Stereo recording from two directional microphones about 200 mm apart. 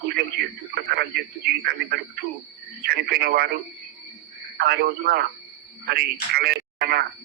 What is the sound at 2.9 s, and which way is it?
Speech, 50° right (ahead or behind).